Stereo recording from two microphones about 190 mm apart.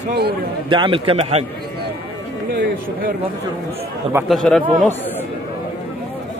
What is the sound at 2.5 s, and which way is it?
Speech, 55° right (ahead or behind).